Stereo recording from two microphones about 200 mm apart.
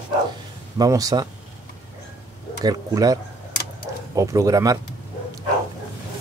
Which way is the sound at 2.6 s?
20° right (ahead or behind).